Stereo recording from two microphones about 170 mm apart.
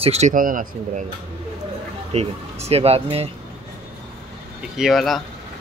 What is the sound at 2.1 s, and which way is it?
Speech, 40° right (ahead or behind).